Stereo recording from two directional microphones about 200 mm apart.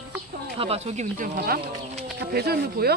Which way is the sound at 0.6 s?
30° right (ahead or behind).